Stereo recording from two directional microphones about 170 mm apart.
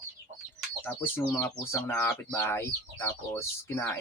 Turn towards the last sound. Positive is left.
turn(degrees=15)  # may be behind; listen again after turning